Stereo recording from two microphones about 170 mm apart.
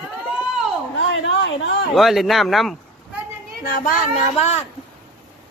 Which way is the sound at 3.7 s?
55° left (ahead or behind).